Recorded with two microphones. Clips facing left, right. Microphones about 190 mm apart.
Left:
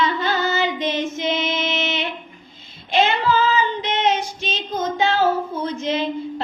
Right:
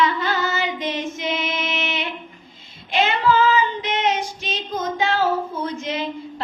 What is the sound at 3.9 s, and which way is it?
Child singing, 30° left (ahead or behind).